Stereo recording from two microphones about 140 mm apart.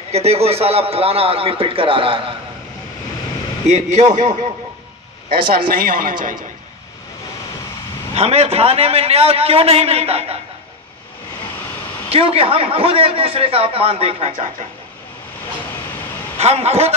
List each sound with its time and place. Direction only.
0.1 s a man's voice: 50° right (ahead or behind)
3.6 s a man's voice: 55° right (ahead or behind)
5.7 s a woman's voice: 90° right
8.1 s a man's voice: 50° right (ahead or behind)
12.1 s a man's voice: 45° right (ahead or behind)
16.3 s a man's voice: 50° right (ahead or behind)